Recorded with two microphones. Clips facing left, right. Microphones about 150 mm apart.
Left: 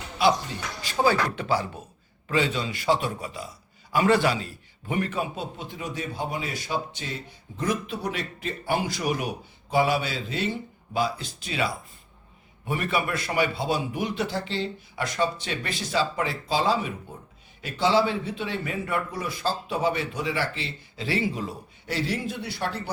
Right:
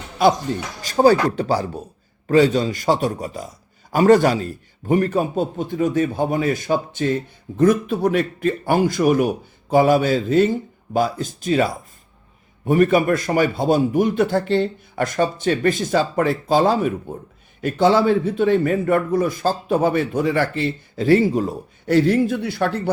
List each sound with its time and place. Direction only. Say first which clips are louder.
0.2 s a man's voice: right 6 dB; 50° right (ahead or behind)